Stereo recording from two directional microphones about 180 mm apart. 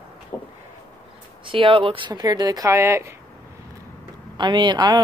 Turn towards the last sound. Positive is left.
turn(degrees=-25)  # may be behind; listen again after turning